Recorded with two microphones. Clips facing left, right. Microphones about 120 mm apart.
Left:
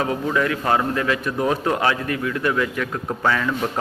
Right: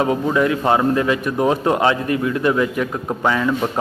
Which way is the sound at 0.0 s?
20° right (ahead or behind).